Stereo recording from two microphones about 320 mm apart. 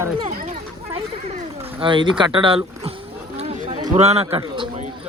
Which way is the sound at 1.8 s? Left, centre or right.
Centre.